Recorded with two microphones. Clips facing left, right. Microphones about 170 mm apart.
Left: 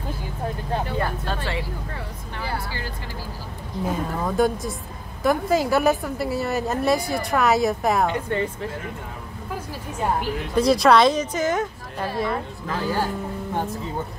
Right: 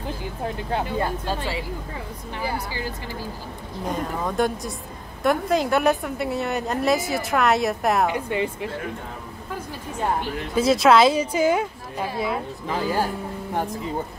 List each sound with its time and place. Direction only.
0.8 s speech: 15° right (ahead or behind)
3.8 s a woman's voice: centre (ahead or behind)
8.1 s speech: 10° right (ahead or behind)
10.5 s speech: centre (ahead or behind)